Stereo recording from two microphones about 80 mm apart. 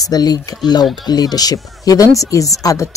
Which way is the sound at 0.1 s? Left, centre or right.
Left.